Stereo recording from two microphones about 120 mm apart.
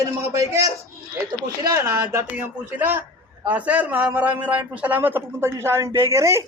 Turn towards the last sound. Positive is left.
turn(degrees=-25)  # may be behind; listen again after turning